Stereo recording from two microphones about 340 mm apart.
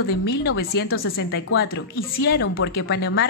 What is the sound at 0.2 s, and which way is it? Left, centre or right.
A woman's voice, left.